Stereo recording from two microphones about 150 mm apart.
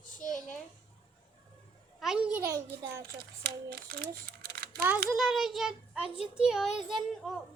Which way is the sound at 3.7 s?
90° right.